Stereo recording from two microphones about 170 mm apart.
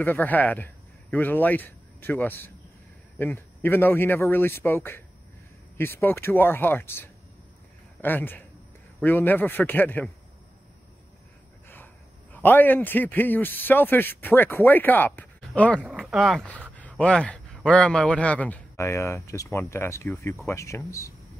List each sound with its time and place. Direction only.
0.0 s a man's voice: 10° left (ahead or behind)
11.7 s a man's voice: 10° left (ahead or behind)
15.9 s dog: centre (ahead or behind)
17.0 s a man's voice: 5° left (ahead or behind)